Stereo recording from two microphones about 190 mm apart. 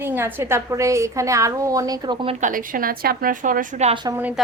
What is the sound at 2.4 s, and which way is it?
A woman's voice, 45° right (ahead or behind).